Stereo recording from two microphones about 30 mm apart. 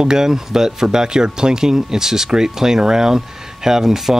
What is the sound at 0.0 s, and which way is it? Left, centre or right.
Speech, right.